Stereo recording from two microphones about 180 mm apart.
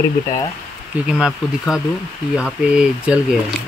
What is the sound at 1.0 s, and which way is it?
Speech, 5° right (ahead or behind).